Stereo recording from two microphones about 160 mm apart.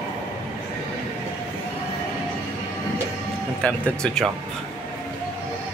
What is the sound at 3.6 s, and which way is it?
Speech, 5° left (ahead or behind).